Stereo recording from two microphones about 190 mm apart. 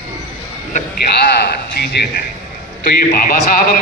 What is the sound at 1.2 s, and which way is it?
A man's voice, 55° left (ahead or behind).